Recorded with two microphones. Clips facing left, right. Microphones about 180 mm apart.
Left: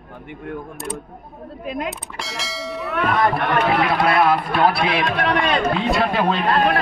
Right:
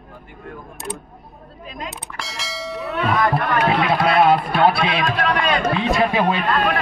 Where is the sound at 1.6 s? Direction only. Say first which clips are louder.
Left 7 dB; 60° left (ahead or behind).